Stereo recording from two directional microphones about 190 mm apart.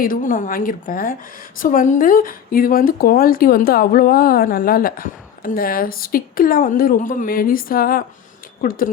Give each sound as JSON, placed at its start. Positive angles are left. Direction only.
{"t": 0.0, "sound": "speech", "side_deg": 45}